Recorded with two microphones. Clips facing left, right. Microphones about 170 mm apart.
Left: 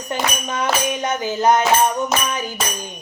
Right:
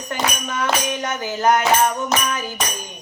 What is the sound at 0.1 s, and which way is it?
Tambourine, 15° left (ahead or behind).